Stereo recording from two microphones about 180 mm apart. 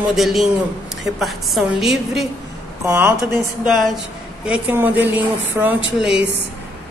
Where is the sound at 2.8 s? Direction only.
15° right (ahead or behind).